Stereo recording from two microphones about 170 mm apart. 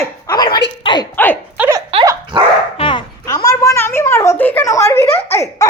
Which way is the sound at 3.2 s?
20° left (ahead or behind).